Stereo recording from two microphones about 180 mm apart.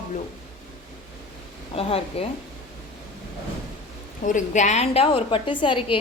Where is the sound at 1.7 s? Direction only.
35° left (ahead or behind).